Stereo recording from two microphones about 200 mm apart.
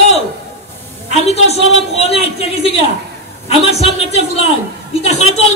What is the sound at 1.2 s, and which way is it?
A woman's voice, 30° left (ahead or behind).